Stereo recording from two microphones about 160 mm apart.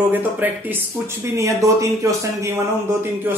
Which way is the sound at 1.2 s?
20° right (ahead or behind).